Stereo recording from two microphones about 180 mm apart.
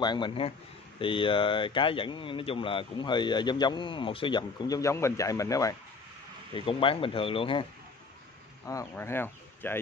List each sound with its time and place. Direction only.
0.0 s speech: 25° left (ahead or behind)
6.5 s speech: 30° left (ahead or behind)
8.6 s speech: 15° left (ahead or behind)